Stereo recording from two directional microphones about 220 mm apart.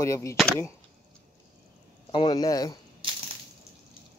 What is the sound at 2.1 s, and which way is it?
Speech, 20° left (ahead or behind).